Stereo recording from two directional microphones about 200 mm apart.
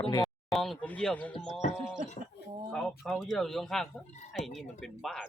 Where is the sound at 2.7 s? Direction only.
Centre (ahead or behind).